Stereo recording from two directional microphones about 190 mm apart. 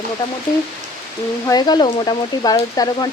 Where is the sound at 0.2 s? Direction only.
25° left (ahead or behind).